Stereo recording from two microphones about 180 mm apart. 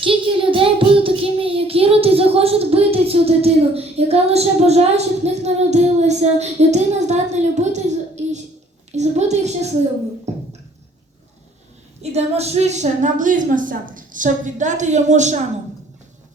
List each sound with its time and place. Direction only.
0.0 s child singing: 30° right (ahead or behind)
8.9 s a sound: 40° right (ahead or behind)
10.3 s beatboxing: 40° right (ahead or behind)
12.1 s a woman's voice: 35° right (ahead or behind)